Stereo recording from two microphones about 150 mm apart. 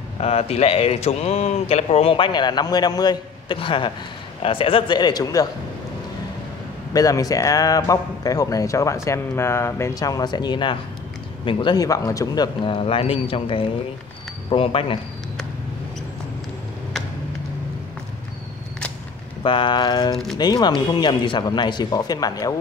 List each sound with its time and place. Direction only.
0.2 s speech: 45° left (ahead or behind); by 5.5 s 25° left (ahead or behind)
6.9 s a man's voice: 25° left (ahead or behind)
12.6 s speech: 35° left (ahead or behind)
19.4 s a man's voice: 35° left (ahead or behind)